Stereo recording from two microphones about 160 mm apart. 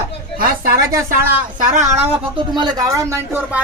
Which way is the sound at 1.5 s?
50° right (ahead or behind).